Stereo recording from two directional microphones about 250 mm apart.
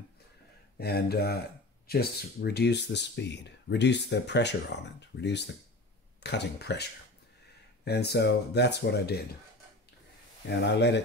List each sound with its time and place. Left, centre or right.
0.7 s speech: left
7.8 s speech: left
10.6 s speech: left